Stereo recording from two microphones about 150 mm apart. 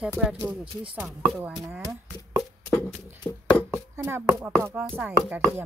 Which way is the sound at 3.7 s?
15° right (ahead or behind).